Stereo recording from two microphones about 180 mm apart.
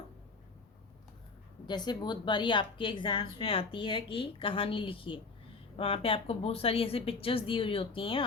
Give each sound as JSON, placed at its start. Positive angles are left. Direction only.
{"t": 1.6, "sound": "a woman's voice", "side_deg": 25}